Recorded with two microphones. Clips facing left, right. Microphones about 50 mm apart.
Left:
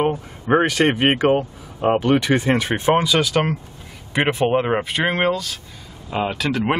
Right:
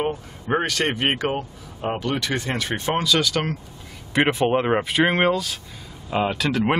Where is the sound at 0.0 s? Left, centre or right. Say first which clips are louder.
Left 5 dB; left.